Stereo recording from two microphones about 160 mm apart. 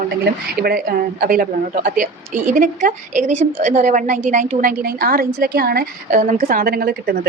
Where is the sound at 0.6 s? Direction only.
70° right (ahead or behind).